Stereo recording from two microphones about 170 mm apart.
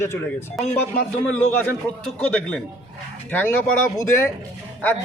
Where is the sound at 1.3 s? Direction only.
10° left (ahead or behind).